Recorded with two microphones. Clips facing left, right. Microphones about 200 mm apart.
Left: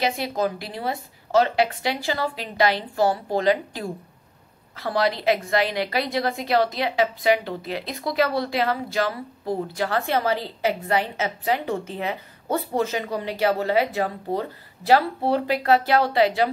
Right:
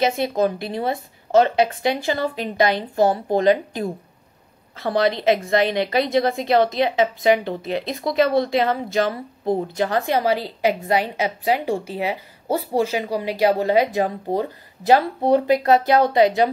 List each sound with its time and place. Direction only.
0.0 s a woman's voice: 20° right (ahead or behind)